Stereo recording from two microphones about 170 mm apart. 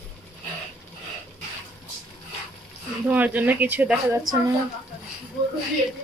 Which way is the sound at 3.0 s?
10° right (ahead or behind).